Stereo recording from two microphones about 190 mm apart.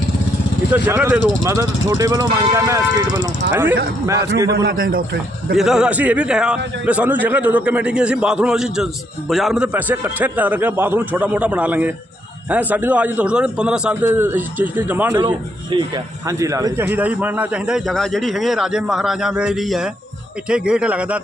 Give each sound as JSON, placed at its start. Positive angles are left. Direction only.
{"t": 0.7, "sound": "a man's voice", "side_deg": -10}
{"t": 4.5, "sound": "a man's voice", "side_deg": -50}
{"t": 5.5, "sound": "a man's voice", "side_deg": -5}
{"t": 15.7, "sound": "a man's voice", "side_deg": -25}